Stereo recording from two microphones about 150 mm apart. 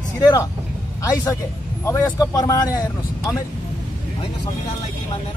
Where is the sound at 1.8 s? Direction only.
20° left (ahead or behind).